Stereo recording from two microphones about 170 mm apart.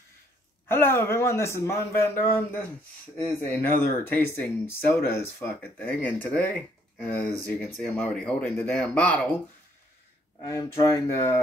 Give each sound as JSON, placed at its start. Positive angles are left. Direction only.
{"t": 0.7, "sound": "speech", "side_deg": 15}
{"t": 10.4, "sound": "speech", "side_deg": 20}